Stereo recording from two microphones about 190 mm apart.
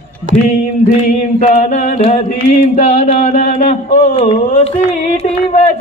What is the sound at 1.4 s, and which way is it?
Speech, 35° left (ahead or behind).